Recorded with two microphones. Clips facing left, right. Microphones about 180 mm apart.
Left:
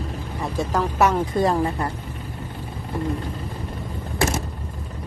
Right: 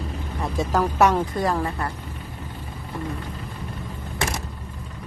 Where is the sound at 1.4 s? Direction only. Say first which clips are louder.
Left 3 dB; 20° left (ahead or behind).